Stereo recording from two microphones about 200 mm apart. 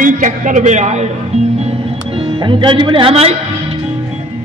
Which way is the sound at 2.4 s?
25° right (ahead or behind).